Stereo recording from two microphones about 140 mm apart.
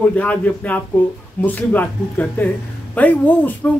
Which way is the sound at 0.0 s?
10° left (ahead or behind).